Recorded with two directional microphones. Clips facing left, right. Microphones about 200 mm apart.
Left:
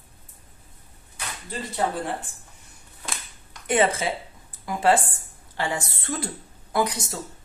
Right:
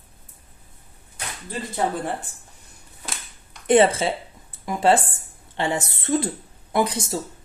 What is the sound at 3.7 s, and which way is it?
Speech, 30° right (ahead or behind).